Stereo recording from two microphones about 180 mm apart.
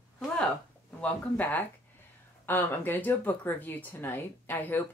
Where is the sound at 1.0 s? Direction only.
10° left (ahead or behind).